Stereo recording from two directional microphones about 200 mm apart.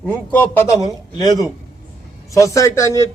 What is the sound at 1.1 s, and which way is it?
A man's voice, 20° left (ahead or behind).